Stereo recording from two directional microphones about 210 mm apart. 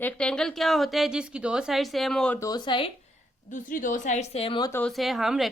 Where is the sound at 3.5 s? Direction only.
40° left (ahead or behind); by 4.8 s 15° left (ahead or behind).